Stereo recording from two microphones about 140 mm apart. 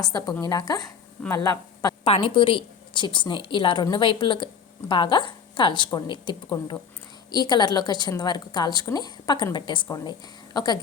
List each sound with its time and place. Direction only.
0.0 s a woman's voice: 30° left (ahead or behind)
2.0 s a woman's voice: 40° left (ahead or behind)